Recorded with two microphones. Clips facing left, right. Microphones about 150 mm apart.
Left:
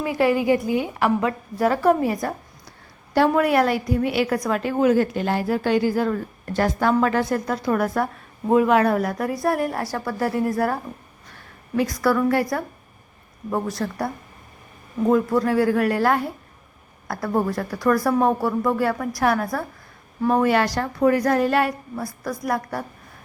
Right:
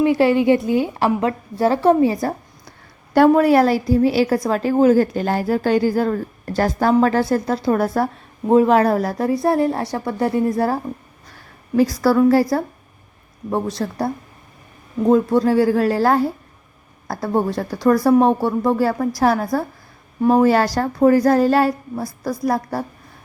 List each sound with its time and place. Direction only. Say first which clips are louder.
0.0 s a woman's voice: right 5 dB; 25° right (ahead or behind)
3.3 s a woman's voice: right 5 dB; 35° right (ahead or behind)
11.8 s a woman's voice: right 5 dB; 30° right (ahead or behind)
15.1 s a woman's voice: right 4 dB; 25° right (ahead or behind)